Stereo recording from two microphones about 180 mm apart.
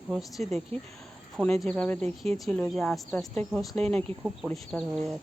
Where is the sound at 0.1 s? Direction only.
Centre (ahead or behind).